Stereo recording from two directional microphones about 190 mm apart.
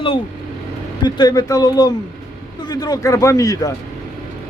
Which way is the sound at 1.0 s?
20° left (ahead or behind).